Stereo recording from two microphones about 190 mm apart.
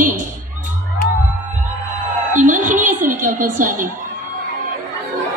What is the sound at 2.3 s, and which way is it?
A woman's voice, 40° right (ahead or behind).